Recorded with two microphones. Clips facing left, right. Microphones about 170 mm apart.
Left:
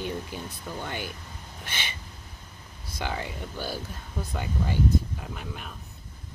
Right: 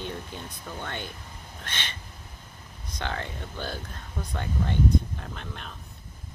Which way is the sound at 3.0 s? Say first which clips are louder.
Left 1 dB; 10° left (ahead or behind).